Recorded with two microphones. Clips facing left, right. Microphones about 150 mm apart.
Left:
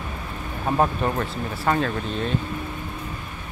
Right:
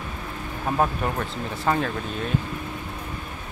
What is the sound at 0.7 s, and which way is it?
Speech, 10° left (ahead or behind).